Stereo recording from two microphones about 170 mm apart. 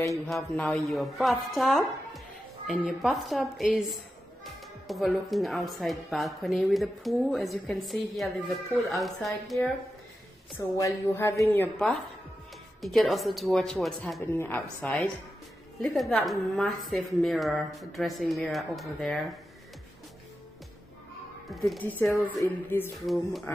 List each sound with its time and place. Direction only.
0.3 s a woman's voice: 5° left (ahead or behind)
4.8 s a woman's voice: centre (ahead or behind)
10.6 s a woman's voice: 15° left (ahead or behind)
21.5 s a woman's voice: centre (ahead or behind)